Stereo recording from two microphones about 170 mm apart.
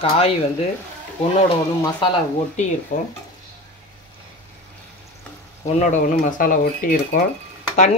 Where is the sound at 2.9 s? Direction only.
50° left (ahead or behind).